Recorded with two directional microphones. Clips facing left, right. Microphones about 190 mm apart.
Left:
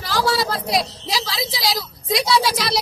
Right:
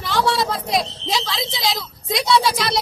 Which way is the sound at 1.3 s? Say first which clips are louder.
Even; centre (ahead or behind).